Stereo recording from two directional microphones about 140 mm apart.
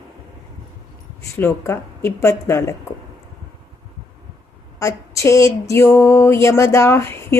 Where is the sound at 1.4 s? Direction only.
20° left (ahead or behind).